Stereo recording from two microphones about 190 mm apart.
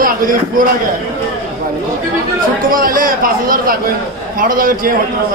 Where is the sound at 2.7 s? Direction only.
50° right (ahead or behind).